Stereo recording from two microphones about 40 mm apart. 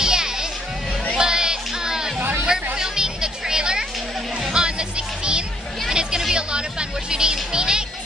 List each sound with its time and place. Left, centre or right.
0.0 s music: centre